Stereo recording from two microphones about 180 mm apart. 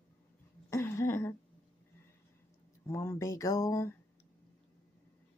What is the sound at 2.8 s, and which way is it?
Speech, 15° left (ahead or behind).